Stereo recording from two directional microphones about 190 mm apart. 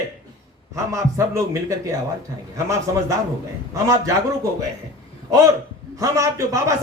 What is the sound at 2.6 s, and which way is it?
A man's voice, 15° right (ahead or behind).